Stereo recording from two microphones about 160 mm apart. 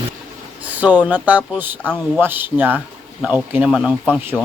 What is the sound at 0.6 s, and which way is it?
Speech, 10° right (ahead or behind).